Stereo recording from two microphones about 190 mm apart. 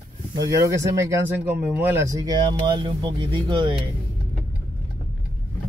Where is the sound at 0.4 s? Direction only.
15° right (ahead or behind).